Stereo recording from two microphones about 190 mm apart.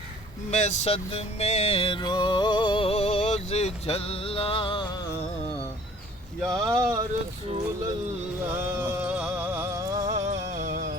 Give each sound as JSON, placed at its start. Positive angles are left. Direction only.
{"t": 0.5, "sound": "music", "side_deg": 40}
{"t": 6.5, "sound": "speech", "side_deg": -20}
{"t": 8.5, "sound": "music", "side_deg": -10}
{"t": 10.1, "sound": "music", "side_deg": -40}